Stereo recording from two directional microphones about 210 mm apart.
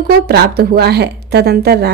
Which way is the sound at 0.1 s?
50° right (ahead or behind).